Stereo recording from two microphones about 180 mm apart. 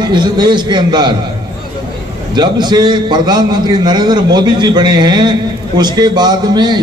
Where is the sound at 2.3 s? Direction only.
25° right (ahead or behind).